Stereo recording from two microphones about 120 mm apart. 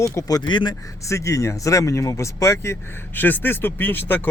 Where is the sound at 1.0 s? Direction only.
25° left (ahead or behind).